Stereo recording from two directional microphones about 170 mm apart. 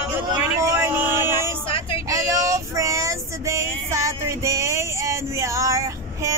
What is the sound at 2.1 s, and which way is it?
Female singing, 20° right (ahead or behind).